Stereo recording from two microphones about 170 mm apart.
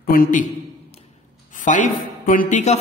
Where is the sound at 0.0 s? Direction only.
60° left (ahead or behind).